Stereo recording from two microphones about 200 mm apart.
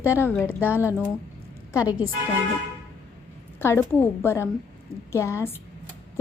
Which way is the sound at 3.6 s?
10° left (ahead or behind).